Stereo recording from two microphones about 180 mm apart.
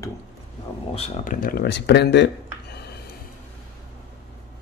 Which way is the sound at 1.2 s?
55° left (ahead or behind).